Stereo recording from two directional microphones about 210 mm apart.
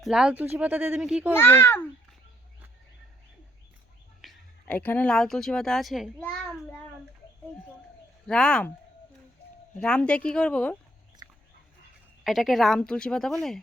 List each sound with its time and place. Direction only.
0.0 s speech: centre (ahead or behind)
1.3 s a child's voice: 10° left (ahead or behind)
4.2 s a woman's voice: 5° left (ahead or behind)
8.3 s speech: 5° left (ahead or behind)
9.7 s speech: 5° left (ahead or behind)
11.2 s dog: 15° right (ahead or behind)
12.2 s speech: centre (ahead or behind)